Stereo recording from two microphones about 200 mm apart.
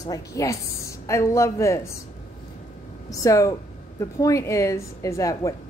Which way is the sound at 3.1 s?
15° left (ahead or behind).